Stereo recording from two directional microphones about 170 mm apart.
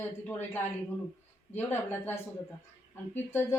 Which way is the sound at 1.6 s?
15° left (ahead or behind).